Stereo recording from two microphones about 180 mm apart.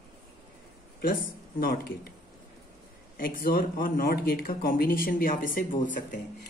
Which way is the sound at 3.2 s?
50° left (ahead or behind).